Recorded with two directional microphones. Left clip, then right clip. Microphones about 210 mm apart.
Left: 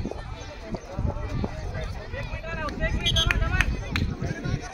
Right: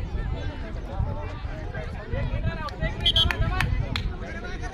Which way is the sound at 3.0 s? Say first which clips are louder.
Right 4 dB; 40° right (ahead or behind).